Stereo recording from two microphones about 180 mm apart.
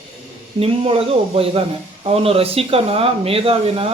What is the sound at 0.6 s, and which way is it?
Speech, 30° right (ahead or behind).